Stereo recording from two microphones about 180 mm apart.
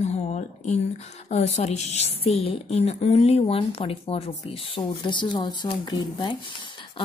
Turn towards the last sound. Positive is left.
turn(degrees=25)  # may be behind; listen again after turning